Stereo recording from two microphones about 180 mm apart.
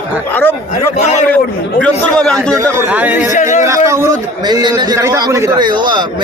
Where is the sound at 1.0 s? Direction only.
40° left (ahead or behind).